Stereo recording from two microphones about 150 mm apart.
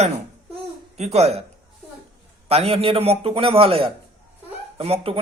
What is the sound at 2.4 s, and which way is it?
A man's voice, 40° right (ahead or behind).